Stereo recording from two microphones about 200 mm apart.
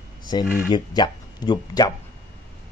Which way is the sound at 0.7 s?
20° left (ahead or behind).